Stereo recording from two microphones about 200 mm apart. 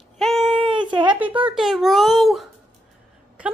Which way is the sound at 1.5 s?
Centre (ahead or behind).